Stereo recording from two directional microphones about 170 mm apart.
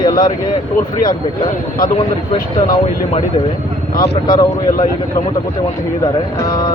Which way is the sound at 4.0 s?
25° left (ahead or behind).